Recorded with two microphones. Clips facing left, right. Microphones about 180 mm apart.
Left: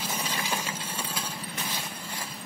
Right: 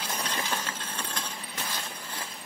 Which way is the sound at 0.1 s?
10° left (ahead or behind).